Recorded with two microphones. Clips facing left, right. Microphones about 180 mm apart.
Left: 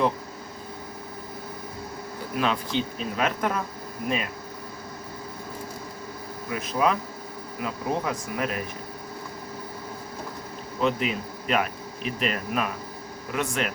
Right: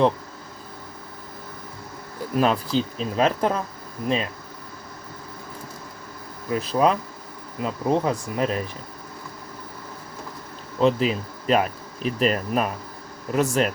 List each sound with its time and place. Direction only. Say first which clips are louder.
2.4 s speech: right 5 dB; 40° right (ahead or behind)
6.5 s speech: right 4 dB; 35° right (ahead or behind)
10.8 s speech: right 5 dB; 35° right (ahead or behind)